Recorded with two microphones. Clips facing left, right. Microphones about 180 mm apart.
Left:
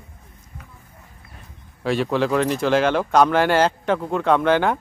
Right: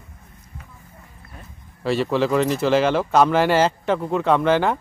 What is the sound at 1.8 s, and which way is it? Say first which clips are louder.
Speech: even; centre (ahead or behind).